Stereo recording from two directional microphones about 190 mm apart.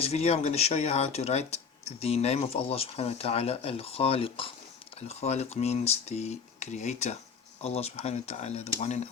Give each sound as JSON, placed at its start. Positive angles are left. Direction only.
{"t": 0.0, "sound": "speech", "side_deg": 35}